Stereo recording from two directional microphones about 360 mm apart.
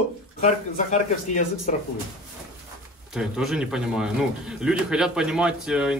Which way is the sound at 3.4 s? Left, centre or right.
Centre.